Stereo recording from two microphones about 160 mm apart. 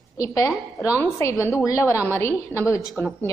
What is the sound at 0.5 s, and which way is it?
Speech, centre (ahead or behind).